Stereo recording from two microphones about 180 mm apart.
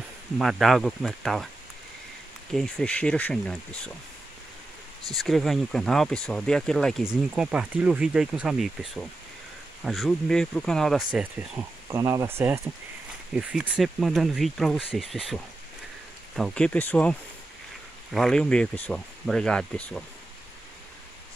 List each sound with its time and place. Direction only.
0.4 s speech: centre (ahead or behind)
2.5 s speech: 5° left (ahead or behind)
5.1 s speech: centre (ahead or behind)
11.9 s speech: 15° right (ahead or behind); by 20.1 s 5° left (ahead or behind)